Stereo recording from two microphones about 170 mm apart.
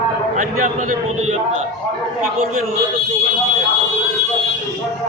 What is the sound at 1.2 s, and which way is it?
Speech, 40° right (ahead or behind).